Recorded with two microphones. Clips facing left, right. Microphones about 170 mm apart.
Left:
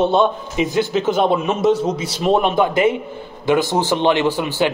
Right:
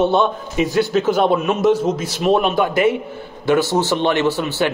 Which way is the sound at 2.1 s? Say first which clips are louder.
Even; 25° left (ahead or behind).